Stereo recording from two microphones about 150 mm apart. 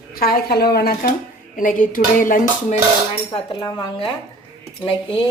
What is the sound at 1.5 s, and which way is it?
Speech, 65° left (ahead or behind).